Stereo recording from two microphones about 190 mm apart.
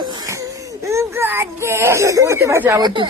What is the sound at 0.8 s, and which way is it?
A child's voice, 15° right (ahead or behind).